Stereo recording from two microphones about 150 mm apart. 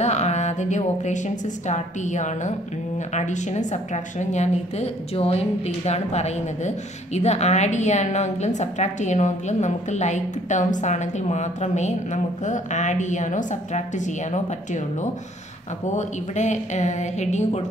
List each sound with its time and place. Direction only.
0.0 s a woman's voice: 50° left (ahead or behind)